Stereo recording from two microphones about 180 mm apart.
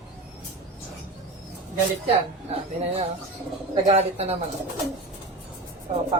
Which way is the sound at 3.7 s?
35° right (ahead or behind).